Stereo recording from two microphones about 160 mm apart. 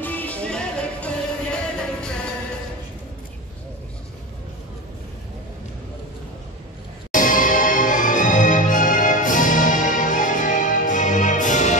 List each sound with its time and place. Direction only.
0.0 s music: 10° left (ahead or behind)
7.1 s music: 55° left (ahead or behind)